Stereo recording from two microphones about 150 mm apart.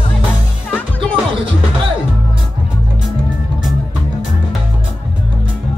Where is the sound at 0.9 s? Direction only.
35° right (ahead or behind).